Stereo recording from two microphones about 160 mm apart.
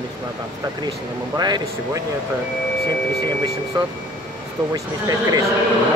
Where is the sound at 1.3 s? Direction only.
25° right (ahead or behind).